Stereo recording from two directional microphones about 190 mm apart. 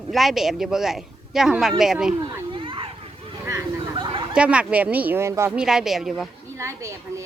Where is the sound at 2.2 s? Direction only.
25° right (ahead or behind).